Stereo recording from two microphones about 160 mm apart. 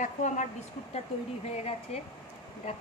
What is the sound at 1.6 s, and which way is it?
Speech, 40° left (ahead or behind).